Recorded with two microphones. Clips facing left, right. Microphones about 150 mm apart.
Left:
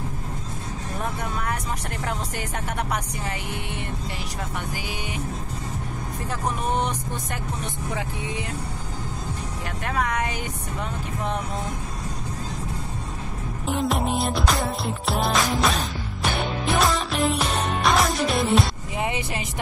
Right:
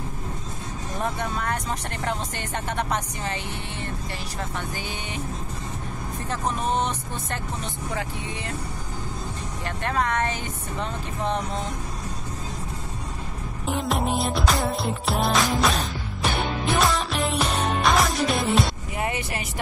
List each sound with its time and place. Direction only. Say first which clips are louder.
9.8 s speech: right 1 dB; 10° left (ahead or behind)
13.7 s music: left 1 dB; centre (ahead or behind)
18.9 s vehicle: left 2 dB; 20° left (ahead or behind)